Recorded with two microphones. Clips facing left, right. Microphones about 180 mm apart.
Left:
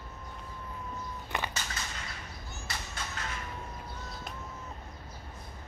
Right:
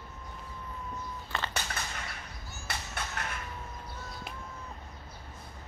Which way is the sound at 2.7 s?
60° right (ahead or behind).